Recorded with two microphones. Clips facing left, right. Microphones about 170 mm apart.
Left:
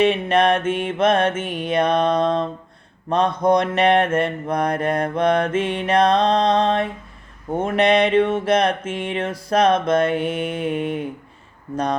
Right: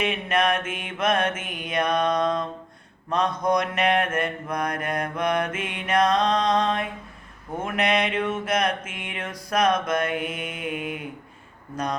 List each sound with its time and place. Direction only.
0.0 s mantra: 30° left (ahead or behind)